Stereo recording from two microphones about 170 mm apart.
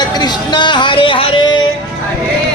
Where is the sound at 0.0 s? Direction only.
25° left (ahead or behind).